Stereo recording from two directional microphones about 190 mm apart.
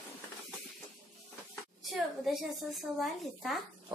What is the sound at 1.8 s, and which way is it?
A woman's voice, centre (ahead or behind).